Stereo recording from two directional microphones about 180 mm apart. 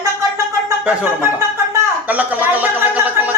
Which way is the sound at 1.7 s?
10° right (ahead or behind).